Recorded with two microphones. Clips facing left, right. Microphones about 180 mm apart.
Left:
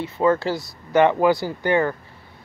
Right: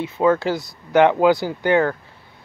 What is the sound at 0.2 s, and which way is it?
Speech, 10° right (ahead or behind).